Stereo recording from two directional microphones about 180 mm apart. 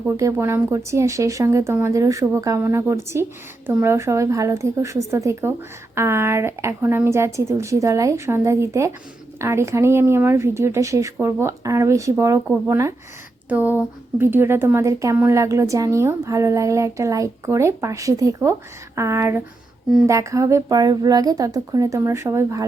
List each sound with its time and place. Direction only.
0.2 s speech: 15° right (ahead or behind)